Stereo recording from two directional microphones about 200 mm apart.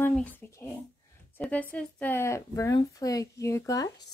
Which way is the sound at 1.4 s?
5° left (ahead or behind).